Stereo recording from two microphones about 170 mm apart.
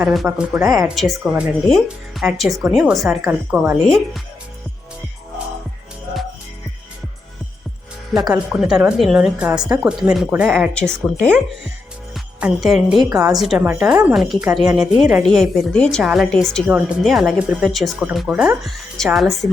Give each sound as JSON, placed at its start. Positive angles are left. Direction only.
{"t": 0.0, "sound": "speech", "side_deg": 0}
{"t": 8.3, "sound": "speech", "side_deg": -5}
{"t": 13.1, "sound": "a woman's voice", "side_deg": -20}
{"t": 13.3, "sound": "speech", "side_deg": 0}